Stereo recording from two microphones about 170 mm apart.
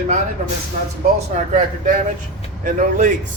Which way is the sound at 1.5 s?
45° right (ahead or behind).